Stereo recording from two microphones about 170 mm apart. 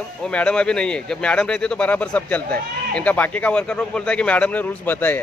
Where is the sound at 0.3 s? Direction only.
5° left (ahead or behind).